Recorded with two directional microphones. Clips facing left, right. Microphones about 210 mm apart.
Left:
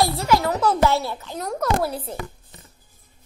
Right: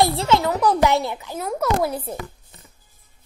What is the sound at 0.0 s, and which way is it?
A child's voice, 25° right (ahead or behind).